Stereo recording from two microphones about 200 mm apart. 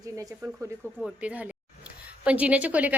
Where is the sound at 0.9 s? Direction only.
5° right (ahead or behind).